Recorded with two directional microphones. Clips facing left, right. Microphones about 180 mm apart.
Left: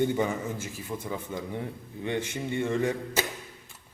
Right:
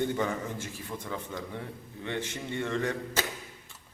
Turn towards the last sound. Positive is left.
turn(degrees=10)  # may be behind; listen again after turning